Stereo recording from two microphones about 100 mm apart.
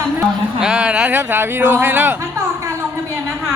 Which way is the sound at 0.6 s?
10° right (ahead or behind).